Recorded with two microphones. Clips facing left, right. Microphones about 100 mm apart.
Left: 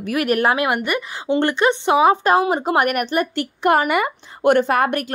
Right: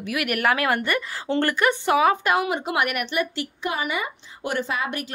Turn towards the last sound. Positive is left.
turn(degrees=55)  # may be behind; listen again after turning